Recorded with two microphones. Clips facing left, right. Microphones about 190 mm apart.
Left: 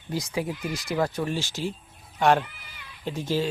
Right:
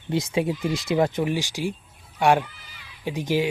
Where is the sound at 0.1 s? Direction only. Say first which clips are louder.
Right 5 dB; 25° right (ahead or behind).